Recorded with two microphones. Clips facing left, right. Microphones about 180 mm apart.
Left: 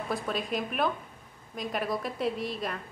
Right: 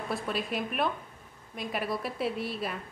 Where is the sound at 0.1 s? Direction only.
Centre (ahead or behind).